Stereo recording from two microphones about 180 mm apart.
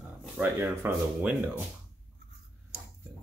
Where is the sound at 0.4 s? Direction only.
10° right (ahead or behind).